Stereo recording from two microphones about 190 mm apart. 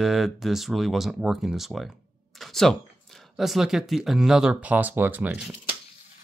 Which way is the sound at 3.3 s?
Centre (ahead or behind).